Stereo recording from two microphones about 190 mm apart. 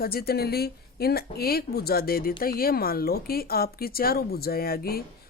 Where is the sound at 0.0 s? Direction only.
55° left (ahead or behind).